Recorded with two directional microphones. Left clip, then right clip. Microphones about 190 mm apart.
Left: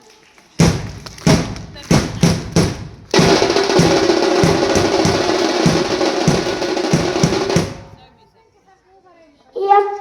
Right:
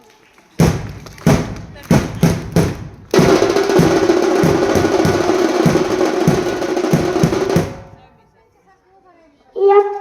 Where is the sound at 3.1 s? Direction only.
70° right (ahead or behind).